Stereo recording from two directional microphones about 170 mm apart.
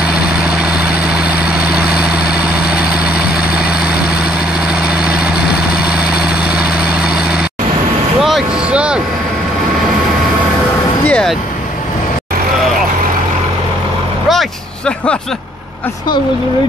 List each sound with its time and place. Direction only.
0.0 s vehicle: 5° right (ahead or behind)
6.4 s vehicle: 65° left (ahead or behind)
6.8 s vehicle: 5° right (ahead or behind)
11.1 s vehicle: 5° left (ahead or behind)
14.3 s vehicle: 5° left (ahead or behind)